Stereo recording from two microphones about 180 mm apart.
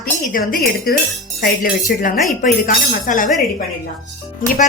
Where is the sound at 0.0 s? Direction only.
55° left (ahead or behind).